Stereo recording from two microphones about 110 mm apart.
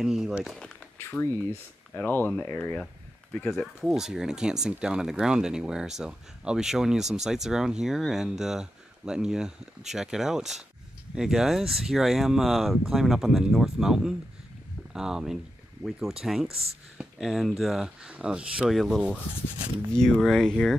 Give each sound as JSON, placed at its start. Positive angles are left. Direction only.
{"t": 0.0, "sound": "speech", "side_deg": -5}
{"t": 1.1, "sound": "speech", "side_deg": 10}
{"t": 3.8, "sound": "speech", "side_deg": -5}
{"t": 19.9, "sound": "speech", "side_deg": 5}